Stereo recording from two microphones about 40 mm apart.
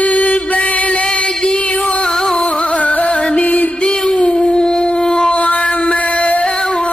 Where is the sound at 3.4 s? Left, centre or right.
Left.